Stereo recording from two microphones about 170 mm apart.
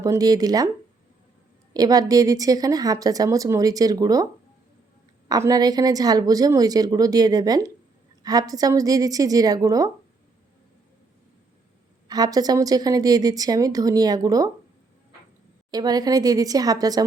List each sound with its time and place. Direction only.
0.0 s a woman's voice: 20° right (ahead or behind)
1.7 s a woman's voice: 20° right (ahead or behind)
5.3 s a woman's voice: 20° right (ahead or behind)
12.0 s a woman's voice: 25° right (ahead or behind)
15.7 s a woman's voice: 20° right (ahead or behind)